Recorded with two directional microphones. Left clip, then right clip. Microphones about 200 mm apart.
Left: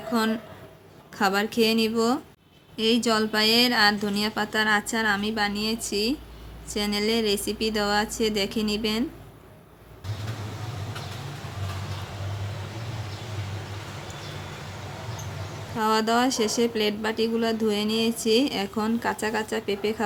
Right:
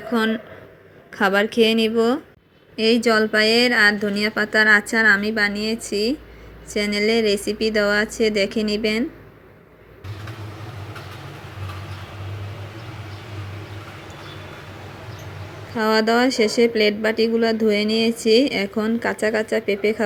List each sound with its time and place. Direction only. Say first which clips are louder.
1.2 s speech: right 6 dB; 5° right (ahead or behind)
1.5 s speech: right 5 dB; 25° left (ahead or behind)
2.7 s speech: right 6 dB; 15° right (ahead or behind)
15.8 s speech: right 5 dB; 15° right (ahead or behind)